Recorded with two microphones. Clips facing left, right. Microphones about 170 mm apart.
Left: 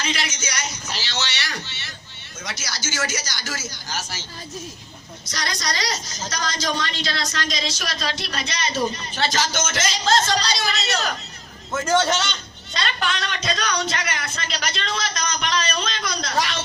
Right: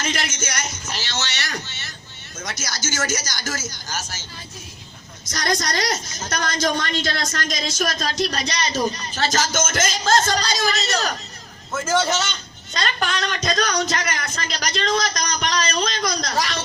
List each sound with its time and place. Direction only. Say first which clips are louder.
0.0 s a woman's voice: right 1 dB; 50° right (ahead or behind)
5.2 s a woman's voice: right 5 dB; 45° right (ahead or behind)
11.9 s a man's voice: left 1 dB; 5° right (ahead or behind)
12.7 s a man's voice: right 1 dB; 45° right (ahead or behind)